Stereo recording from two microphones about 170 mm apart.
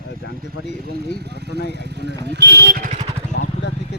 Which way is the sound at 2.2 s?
85° right.